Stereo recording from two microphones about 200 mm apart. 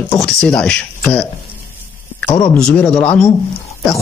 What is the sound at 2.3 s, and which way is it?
Speech, 25° left (ahead or behind).